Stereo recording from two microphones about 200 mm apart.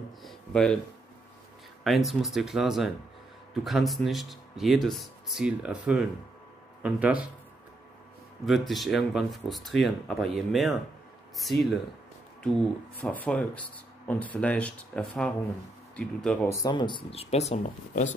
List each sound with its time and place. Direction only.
0.2 s a sound: centre (ahead or behind)
1.9 s speech: centre (ahead or behind)
8.5 s speech: centre (ahead or behind)
12.4 s speech: 5° left (ahead or behind)
16.4 s speech: 15° left (ahead or behind); by 18.0 s 35° left (ahead or behind)